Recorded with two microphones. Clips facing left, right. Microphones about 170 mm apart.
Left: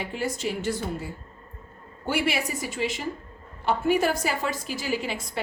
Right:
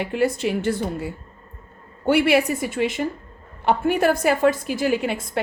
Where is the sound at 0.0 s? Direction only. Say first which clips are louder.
Right 8 dB; 60° right (ahead or behind).